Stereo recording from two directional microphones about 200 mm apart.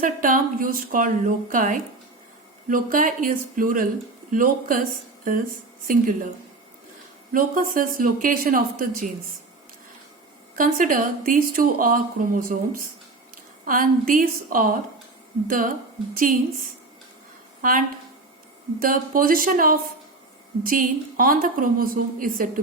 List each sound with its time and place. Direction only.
0.0 s speech: 45° right (ahead or behind)
7.3 s speech: 45° right (ahead or behind)
10.5 s speech: 45° right (ahead or behind)
17.6 s speech: 45° right (ahead or behind)